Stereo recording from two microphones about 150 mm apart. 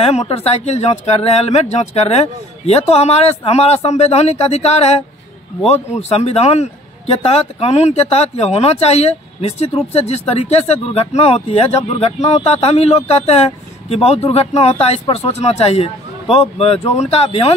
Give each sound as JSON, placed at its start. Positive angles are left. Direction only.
{"t": 0.0, "sound": "speech", "side_deg": 45}